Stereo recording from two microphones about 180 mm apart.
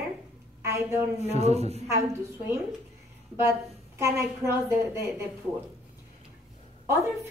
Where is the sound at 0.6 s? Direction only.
15° right (ahead or behind).